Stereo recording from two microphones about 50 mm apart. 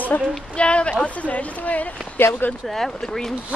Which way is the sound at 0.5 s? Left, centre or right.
Left.